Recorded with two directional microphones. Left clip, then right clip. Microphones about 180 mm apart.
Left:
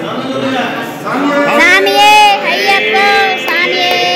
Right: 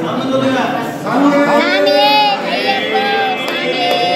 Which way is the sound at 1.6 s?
35° left (ahead or behind).